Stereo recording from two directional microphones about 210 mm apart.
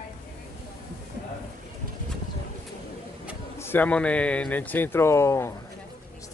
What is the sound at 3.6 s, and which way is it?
Speech, 10° left (ahead or behind).